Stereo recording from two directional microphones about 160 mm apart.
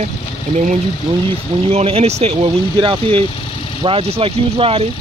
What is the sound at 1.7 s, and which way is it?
Speech, 40° right (ahead or behind).